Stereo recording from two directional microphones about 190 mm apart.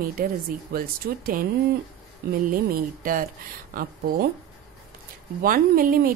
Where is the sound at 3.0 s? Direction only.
45° right (ahead or behind).